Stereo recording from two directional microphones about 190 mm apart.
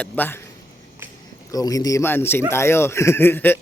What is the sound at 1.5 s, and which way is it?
Speech, 20° left (ahead or behind).